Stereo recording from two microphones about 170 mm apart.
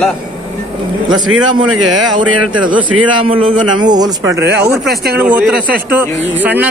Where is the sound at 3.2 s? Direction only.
30° right (ahead or behind).